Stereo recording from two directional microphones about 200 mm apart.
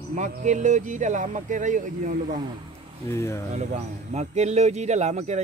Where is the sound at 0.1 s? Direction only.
40° right (ahead or behind).